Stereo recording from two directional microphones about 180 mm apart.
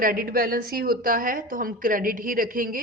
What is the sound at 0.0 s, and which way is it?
A woman's voice, 55° right (ahead or behind).